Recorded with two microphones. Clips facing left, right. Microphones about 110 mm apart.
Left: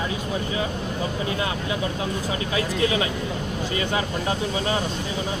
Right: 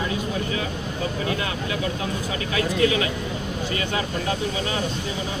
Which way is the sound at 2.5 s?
30° left (ahead or behind).